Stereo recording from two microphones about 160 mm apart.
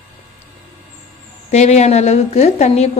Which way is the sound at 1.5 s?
45° left (ahead or behind).